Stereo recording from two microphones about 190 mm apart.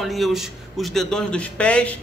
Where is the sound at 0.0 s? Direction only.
Centre (ahead or behind).